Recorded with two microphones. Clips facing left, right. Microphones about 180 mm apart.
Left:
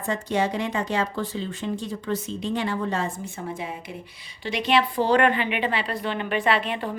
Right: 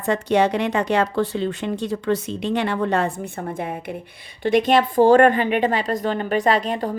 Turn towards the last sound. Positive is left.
turn(degrees=-40)  # may be behind; listen again after turning